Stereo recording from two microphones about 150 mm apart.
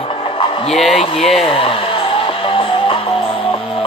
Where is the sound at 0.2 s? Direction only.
35° left (ahead or behind).